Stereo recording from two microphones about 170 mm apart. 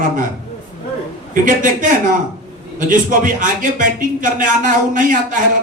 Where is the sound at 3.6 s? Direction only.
50° right (ahead or behind).